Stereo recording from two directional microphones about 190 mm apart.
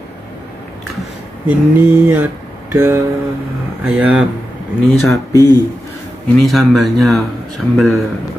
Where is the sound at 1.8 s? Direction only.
10° right (ahead or behind).